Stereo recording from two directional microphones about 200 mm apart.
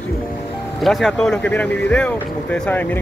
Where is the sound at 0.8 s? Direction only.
Centre (ahead or behind).